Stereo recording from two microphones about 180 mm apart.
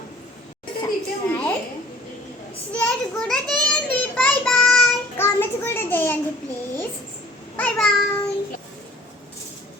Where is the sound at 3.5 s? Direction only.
5° left (ahead or behind).